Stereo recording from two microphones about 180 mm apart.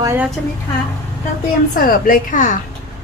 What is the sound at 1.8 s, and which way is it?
Speech, 55° left (ahead or behind).